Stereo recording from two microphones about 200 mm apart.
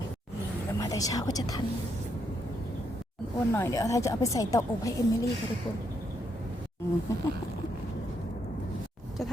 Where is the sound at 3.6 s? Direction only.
15° left (ahead or behind).